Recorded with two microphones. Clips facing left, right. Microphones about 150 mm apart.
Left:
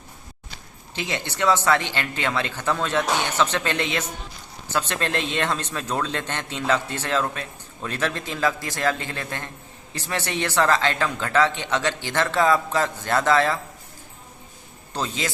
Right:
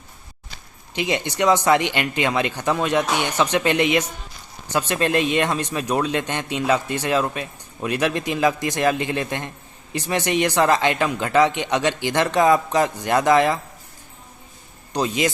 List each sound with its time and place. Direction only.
0.9 s speech: 15° right (ahead or behind)
14.9 s speech: 15° right (ahead or behind)